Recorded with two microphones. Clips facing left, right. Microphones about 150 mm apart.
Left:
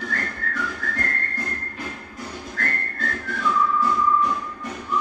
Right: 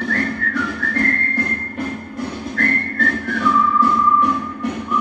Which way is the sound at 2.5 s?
70° right (ahead or behind).